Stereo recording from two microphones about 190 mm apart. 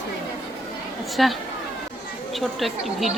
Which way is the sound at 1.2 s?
Centre (ahead or behind).